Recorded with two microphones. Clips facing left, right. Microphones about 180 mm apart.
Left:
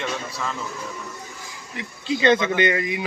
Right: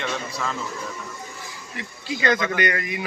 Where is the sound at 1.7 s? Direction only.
25° left (ahead or behind).